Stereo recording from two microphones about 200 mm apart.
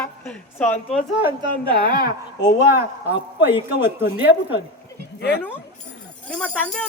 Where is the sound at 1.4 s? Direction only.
25° right (ahead or behind).